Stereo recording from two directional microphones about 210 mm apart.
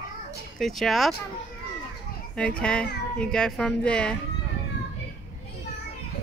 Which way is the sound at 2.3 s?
5° left (ahead or behind).